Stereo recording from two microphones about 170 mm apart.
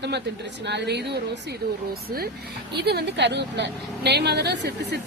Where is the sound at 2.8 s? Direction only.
75° right (ahead or behind).